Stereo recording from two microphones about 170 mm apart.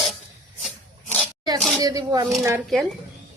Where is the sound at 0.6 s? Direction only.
5° left (ahead or behind).